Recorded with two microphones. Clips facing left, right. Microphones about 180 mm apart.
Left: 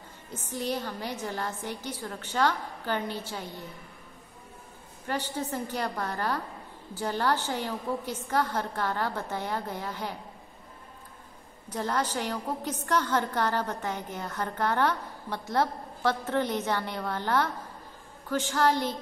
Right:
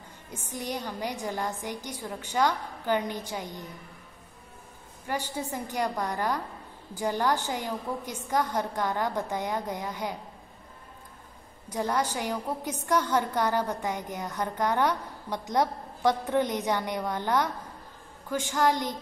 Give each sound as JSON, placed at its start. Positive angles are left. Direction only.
{"t": 0.3, "sound": "a woman's voice", "side_deg": -10}
{"t": 5.0, "sound": "a woman's voice", "side_deg": -10}
{"t": 11.7, "sound": "a woman's voice", "side_deg": -10}